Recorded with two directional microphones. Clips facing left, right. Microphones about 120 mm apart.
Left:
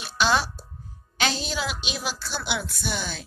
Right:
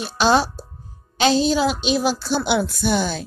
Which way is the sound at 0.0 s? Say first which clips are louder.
Right 6 dB; 35° right (ahead or behind).